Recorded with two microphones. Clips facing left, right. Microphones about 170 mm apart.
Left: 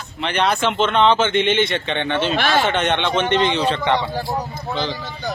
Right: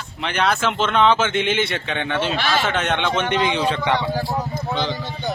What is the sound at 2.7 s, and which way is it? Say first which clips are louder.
Speech: left 2 dB; 5° right (ahead or behind).